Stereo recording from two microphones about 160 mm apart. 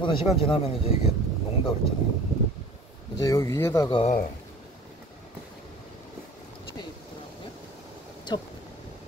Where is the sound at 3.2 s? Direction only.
20° left (ahead or behind).